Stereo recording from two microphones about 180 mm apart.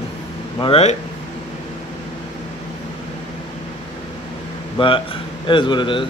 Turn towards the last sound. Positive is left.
turn(degrees=25)  # may be behind; listen again after turning